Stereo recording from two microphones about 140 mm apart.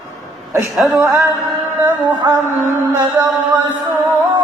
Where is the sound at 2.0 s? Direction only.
30° right (ahead or behind).